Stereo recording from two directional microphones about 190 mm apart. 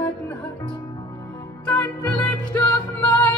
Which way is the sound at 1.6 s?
5° left (ahead or behind).